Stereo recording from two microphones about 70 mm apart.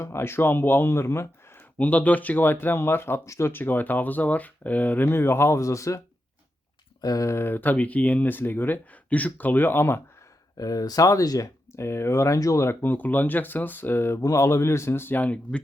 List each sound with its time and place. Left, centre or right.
0.0 s speech: left
1.8 s speech: left
7.0 s speech: left
7.3 s speech: left
10.6 s speech: left
12.8 s speech: left
14.2 s speech: left